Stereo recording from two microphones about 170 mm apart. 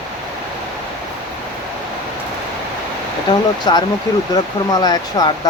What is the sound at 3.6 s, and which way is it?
Speech, 25° left (ahead or behind).